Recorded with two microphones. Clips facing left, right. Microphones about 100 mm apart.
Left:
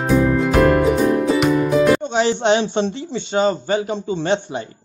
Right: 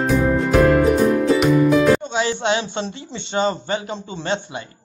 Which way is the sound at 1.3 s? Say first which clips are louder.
Right 1 dB; centre (ahead or behind).